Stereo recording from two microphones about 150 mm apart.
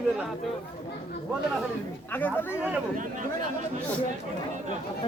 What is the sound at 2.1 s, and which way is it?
Speech, 15° left (ahead or behind).